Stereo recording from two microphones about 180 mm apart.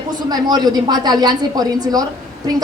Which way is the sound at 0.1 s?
20° right (ahead or behind).